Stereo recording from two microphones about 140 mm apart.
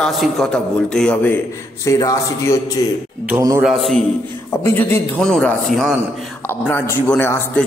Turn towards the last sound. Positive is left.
turn(degrees=15)  # may be behind; listen again after turning